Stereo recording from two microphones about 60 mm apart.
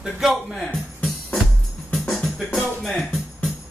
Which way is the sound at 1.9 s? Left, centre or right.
Centre.